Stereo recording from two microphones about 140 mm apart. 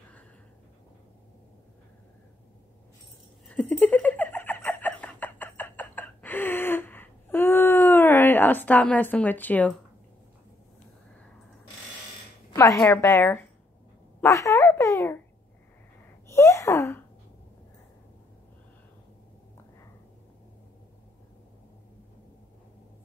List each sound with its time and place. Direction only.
3.4 s giggle: 10° left (ahead or behind)
12.5 s a woman's voice: 20° left (ahead or behind)
14.2 s a sound: 20° left (ahead or behind)
16.3 s wail: 20° left (ahead or behind)